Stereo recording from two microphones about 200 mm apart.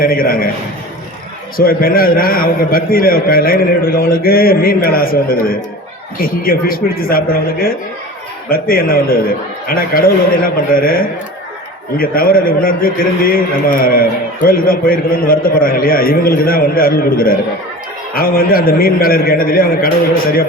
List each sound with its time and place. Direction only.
0.0 s a man's voice: 45° left (ahead or behind)
1.5 s a man's voice: 45° left (ahead or behind)